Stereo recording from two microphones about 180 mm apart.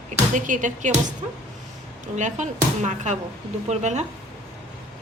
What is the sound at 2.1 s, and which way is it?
Speech, 40° right (ahead or behind).